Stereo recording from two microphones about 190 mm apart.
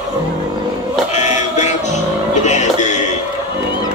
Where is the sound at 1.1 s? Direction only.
40° left (ahead or behind).